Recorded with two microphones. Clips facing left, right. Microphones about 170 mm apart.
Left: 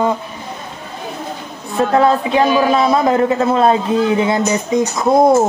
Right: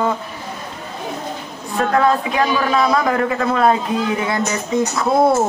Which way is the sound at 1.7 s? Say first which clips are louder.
Left 3 dB; 25° left (ahead or behind).